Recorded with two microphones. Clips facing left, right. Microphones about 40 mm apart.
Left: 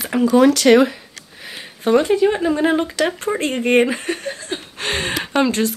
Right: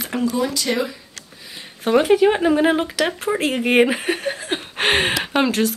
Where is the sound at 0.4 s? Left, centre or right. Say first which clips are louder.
Left 10 dB; left.